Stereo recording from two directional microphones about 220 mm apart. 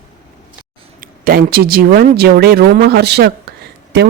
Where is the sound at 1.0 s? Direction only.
40° right (ahead or behind).